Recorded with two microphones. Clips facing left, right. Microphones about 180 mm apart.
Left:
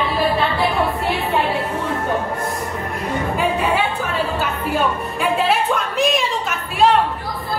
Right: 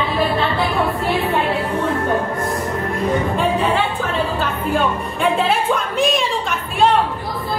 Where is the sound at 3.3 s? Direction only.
10° left (ahead or behind).